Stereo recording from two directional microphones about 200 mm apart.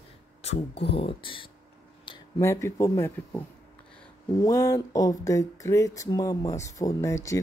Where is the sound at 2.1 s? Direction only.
25° left (ahead or behind).